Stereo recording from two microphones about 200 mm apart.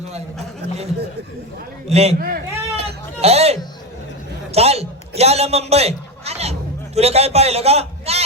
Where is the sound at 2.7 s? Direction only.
30° right (ahead or behind).